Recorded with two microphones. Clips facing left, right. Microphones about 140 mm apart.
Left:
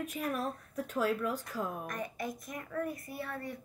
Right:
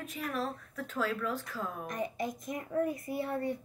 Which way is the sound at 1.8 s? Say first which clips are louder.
Right 3 dB; 20° right (ahead or behind).